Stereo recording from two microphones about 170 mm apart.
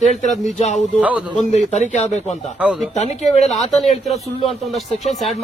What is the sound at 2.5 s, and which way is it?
Speech, 5° right (ahead or behind).